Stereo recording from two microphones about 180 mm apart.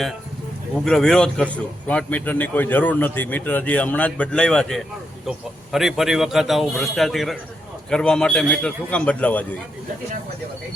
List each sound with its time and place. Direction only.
0.9 s a man's voice: 5° left (ahead or behind)